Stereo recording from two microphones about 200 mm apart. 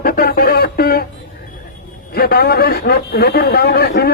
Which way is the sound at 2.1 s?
50° left (ahead or behind).